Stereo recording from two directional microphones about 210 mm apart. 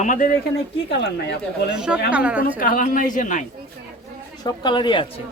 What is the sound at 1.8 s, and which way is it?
Speech, 5° right (ahead or behind).